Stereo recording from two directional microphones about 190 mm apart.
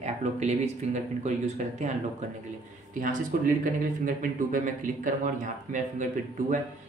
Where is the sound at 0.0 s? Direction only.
35° right (ahead or behind).